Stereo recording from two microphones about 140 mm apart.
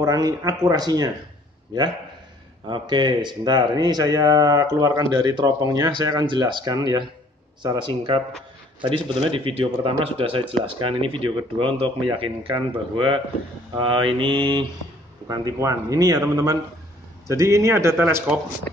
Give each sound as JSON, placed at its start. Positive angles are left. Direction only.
{"t": 0.0, "sound": "speech", "side_deg": -25}